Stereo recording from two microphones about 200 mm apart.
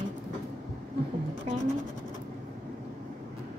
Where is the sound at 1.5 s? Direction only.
30° right (ahead or behind).